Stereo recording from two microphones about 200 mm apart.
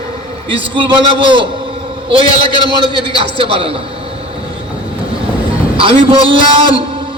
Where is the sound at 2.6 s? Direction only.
25° right (ahead or behind).